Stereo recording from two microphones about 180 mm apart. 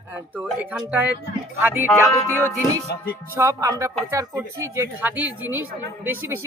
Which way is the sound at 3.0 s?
10° left (ahead or behind).